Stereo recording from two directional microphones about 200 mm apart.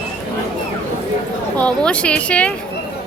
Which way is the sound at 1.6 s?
5° left (ahead or behind).